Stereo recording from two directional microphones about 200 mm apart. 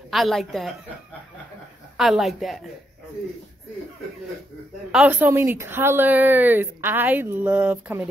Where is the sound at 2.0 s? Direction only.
Centre (ahead or behind).